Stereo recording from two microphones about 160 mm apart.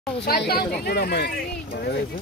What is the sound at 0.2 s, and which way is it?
Speech, 80° left.